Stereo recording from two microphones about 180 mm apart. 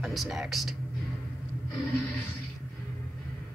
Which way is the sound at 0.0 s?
Centre (ahead or behind).